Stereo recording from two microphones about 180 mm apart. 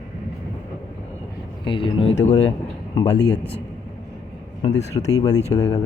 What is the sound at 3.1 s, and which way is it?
Speech, 70° left (ahead or behind).